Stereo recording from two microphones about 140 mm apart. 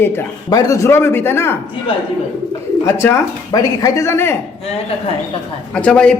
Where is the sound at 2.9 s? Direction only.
20° left (ahead or behind).